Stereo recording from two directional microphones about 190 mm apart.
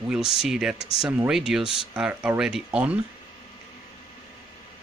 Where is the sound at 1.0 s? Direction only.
5° right (ahead or behind).